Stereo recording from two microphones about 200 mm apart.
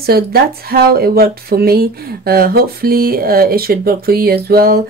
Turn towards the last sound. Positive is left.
turn(degrees=-50)  # may be behind; listen again after turning